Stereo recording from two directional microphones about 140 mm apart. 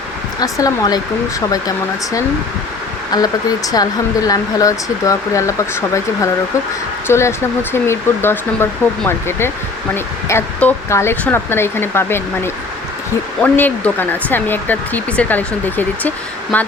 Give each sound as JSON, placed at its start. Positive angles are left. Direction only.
{"t": 0.3, "sound": "speech", "side_deg": 25}
{"t": 3.1, "sound": "speech", "side_deg": 30}
{"t": 7.1, "sound": "speech", "side_deg": 20}